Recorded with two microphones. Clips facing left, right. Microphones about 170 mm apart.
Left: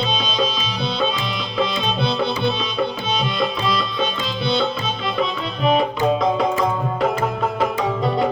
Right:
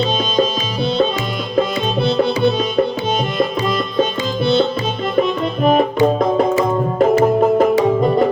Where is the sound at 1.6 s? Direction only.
45° right (ahead or behind).